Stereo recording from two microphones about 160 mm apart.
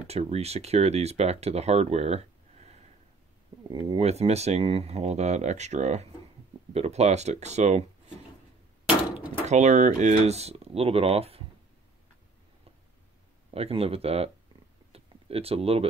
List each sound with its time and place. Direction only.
0.0 s speech: 40° right (ahead or behind)
3.6 s speech: 30° right (ahead or behind); by 7.8 s 45° right (ahead or behind)
9.5 s speech: 45° right (ahead or behind)
13.5 s speech: 40° right (ahead or behind)
14.9 s a sound: 40° right (ahead or behind)